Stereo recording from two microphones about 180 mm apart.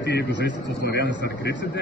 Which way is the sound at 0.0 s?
75° left (ahead or behind).